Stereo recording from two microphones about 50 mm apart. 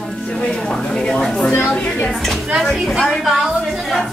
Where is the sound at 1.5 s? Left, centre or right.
Left.